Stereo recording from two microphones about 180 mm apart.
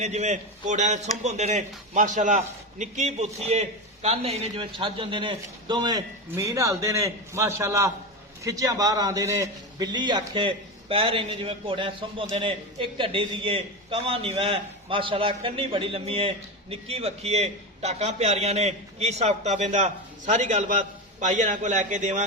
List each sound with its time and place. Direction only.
0.0 s a man's voice: 40° right (ahead or behind)